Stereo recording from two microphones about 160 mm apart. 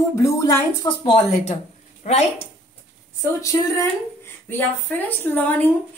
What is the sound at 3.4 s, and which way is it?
Speech, 20° left (ahead or behind).